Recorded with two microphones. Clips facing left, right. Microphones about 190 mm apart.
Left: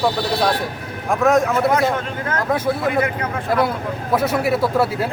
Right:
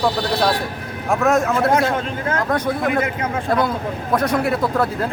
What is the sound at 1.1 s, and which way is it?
Speech, centre (ahead or behind).